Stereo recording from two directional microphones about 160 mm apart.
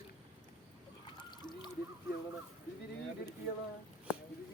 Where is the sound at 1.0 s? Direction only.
25° left (ahead or behind).